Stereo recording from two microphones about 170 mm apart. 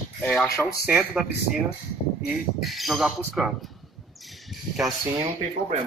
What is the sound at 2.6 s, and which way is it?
Speech, centre (ahead or behind).